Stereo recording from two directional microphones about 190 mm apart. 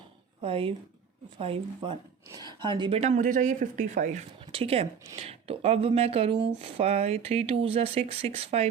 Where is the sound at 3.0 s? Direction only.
40° right (ahead or behind).